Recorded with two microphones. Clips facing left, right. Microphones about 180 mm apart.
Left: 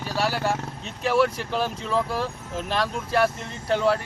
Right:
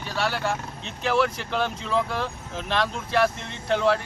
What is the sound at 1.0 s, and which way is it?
Speech, centre (ahead or behind).